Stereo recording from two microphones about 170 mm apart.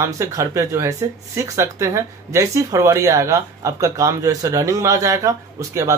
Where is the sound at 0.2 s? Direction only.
20° right (ahead or behind).